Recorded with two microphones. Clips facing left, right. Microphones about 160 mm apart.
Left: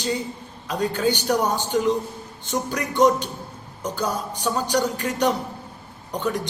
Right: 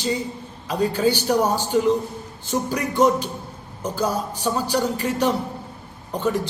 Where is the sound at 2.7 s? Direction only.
5° right (ahead or behind).